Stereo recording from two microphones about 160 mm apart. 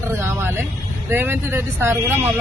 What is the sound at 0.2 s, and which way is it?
A man's voice, 15° right (ahead or behind).